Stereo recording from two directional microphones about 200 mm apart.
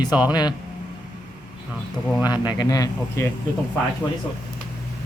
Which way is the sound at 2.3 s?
20° left (ahead or behind).